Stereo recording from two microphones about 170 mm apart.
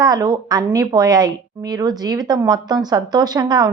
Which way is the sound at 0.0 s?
20° right (ahead or behind).